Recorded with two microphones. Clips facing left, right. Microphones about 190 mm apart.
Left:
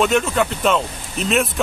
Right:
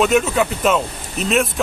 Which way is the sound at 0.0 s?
5° right (ahead or behind).